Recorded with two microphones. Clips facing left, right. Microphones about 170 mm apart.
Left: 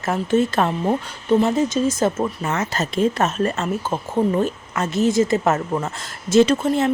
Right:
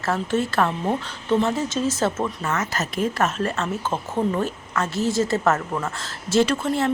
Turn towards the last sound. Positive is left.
turn(degrees=20)  # may be behind; listen again after turning